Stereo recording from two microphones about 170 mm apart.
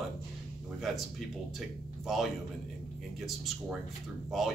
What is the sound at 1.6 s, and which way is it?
A man's voice, centre (ahead or behind).